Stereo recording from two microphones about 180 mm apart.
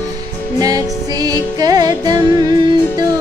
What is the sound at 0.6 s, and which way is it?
Music, 20° right (ahead or behind).